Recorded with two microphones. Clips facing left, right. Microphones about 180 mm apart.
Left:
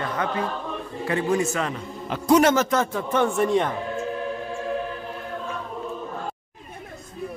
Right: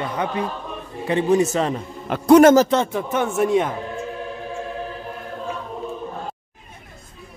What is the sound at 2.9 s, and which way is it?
Speech, 5° right (ahead or behind).